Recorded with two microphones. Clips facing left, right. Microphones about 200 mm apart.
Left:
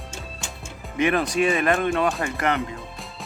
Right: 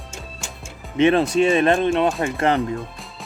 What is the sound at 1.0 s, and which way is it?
Speech, 25° right (ahead or behind).